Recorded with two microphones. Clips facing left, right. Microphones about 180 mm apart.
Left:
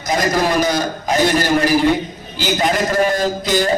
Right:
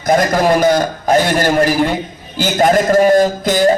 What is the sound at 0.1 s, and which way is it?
A man's voice, 55° right (ahead or behind).